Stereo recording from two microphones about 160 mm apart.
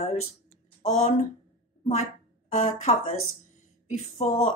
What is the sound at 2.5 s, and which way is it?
Speech, 50° left (ahead or behind).